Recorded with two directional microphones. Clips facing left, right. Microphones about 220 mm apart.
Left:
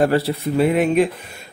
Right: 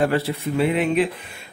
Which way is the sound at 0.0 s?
40° left (ahead or behind).